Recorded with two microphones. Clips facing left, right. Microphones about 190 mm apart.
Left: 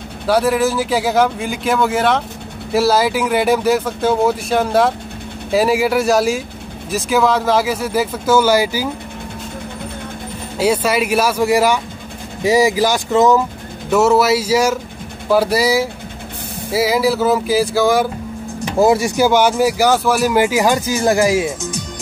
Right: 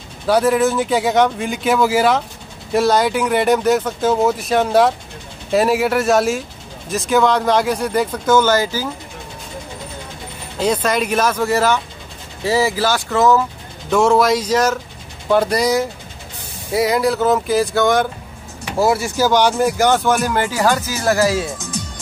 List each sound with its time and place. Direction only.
0.3 s speech: centre (ahead or behind)
10.6 s speech: 10° left (ahead or behind)
13.8 s speech: 5° left (ahead or behind)
18.8 s speech: 20° left (ahead or behind)